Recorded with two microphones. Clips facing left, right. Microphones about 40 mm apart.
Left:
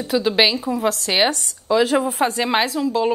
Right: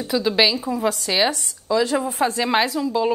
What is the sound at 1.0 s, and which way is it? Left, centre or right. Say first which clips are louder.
Speech: left 2 dB; left.